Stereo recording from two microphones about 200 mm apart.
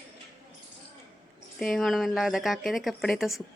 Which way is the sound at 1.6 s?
Centre (ahead or behind).